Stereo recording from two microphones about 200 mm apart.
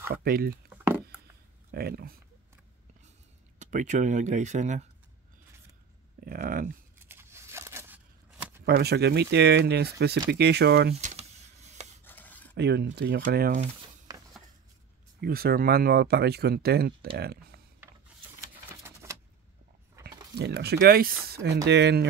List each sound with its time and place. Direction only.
0.2 s speech: 50° right (ahead or behind)
1.7 s speech: 50° right (ahead or behind)
3.5 s speech: 35° right (ahead or behind)
6.2 s speech: 50° right (ahead or behind)
7.0 s a sound: 10° right (ahead or behind)
8.6 s speech: 55° right (ahead or behind)
11.0 s a sound: 35° right (ahead or behind)
12.0 s cutlery: 10° left (ahead or behind)
12.5 s speech: 55° right (ahead or behind)
14.1 s a sound: 20° right (ahead or behind)
15.1 s speech: 50° right (ahead or behind)
18.7 s typewriter: 15° right (ahead or behind)
20.0 s a sound: 15° right (ahead or behind)
20.3 s speech: 55° right (ahead or behind)